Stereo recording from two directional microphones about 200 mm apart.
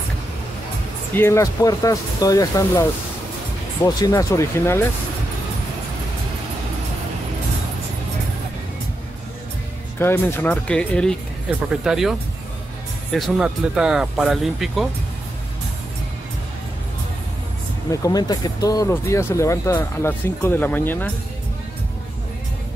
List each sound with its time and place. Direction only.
1.1 s speech: 15° left (ahead or behind)
9.9 s speech: 10° left (ahead or behind)
18.0 s speech: 20° left (ahead or behind)